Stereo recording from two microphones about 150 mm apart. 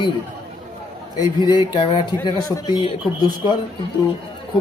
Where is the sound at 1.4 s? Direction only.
30° left (ahead or behind).